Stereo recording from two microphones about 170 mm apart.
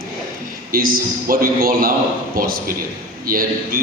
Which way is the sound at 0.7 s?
55° right (ahead or behind).